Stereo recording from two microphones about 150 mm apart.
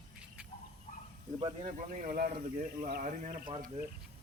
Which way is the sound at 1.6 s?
55° right (ahead or behind).